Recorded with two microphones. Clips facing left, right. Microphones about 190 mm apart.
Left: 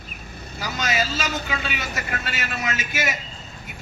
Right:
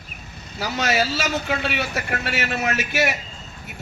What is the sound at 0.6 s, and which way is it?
A man's voice, 60° right (ahead or behind).